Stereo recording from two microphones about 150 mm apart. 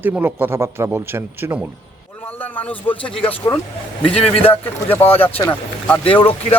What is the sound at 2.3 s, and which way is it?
Speech, 10° left (ahead or behind).